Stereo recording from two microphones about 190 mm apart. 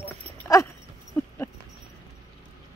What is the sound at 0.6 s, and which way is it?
Dog, 15° left (ahead or behind).